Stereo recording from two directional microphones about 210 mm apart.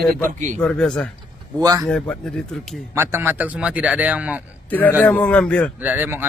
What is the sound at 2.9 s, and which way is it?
A man's voice, 10° right (ahead or behind).